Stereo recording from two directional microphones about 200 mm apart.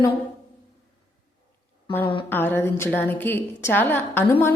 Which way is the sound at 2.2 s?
10° left (ahead or behind).